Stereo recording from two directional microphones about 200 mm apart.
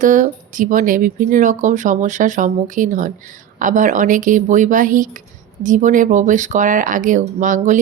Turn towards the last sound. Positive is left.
turn(degrees=-40)  # may be behind; listen again after turning